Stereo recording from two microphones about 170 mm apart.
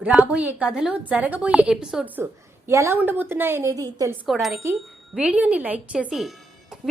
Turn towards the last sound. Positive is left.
turn(degrees=0)  # may be behind; listen again after turning